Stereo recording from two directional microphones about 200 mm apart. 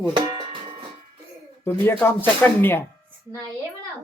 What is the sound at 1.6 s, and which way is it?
Speech, 10° left (ahead or behind).